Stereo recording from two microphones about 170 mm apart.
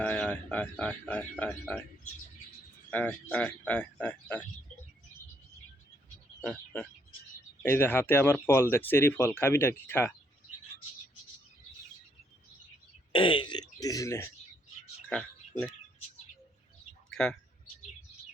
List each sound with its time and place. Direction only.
0.0 s speech: 5° left (ahead or behind)
2.9 s speech: 10° left (ahead or behind)
6.4 s speech: 5° left (ahead or behind)
13.1 s speech: 30° left (ahead or behind)
17.1 s a sound: 5° left (ahead or behind)